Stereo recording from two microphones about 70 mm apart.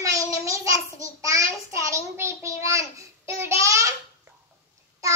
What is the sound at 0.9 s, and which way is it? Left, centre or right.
Child singing, right.